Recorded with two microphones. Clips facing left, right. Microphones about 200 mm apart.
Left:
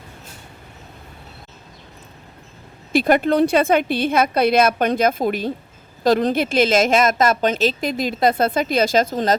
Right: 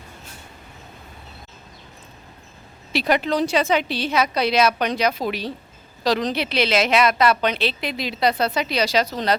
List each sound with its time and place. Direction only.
2.9 s a woman's voice: 50° left (ahead or behind)